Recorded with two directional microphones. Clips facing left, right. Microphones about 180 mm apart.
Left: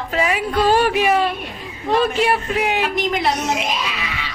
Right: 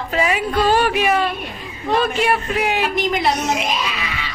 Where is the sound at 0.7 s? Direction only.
35° left (ahead or behind); by 2.9 s 20° left (ahead or behind).